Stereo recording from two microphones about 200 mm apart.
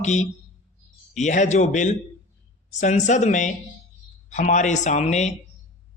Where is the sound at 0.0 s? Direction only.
35° left (ahead or behind).